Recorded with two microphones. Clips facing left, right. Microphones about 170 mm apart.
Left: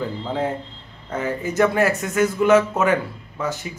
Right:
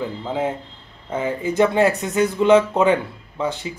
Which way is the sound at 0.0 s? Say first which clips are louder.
Right 1 dB; 10° right (ahead or behind).